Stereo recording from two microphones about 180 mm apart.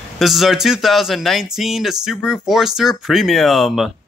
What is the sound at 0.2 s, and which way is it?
Speech, centre (ahead or behind).